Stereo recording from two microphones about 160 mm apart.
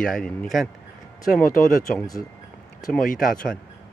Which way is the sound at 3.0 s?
60° left (ahead or behind).